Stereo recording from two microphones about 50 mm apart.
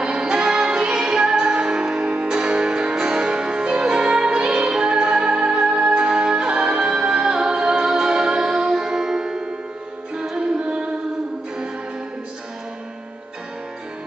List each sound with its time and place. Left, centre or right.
0.0 s music: centre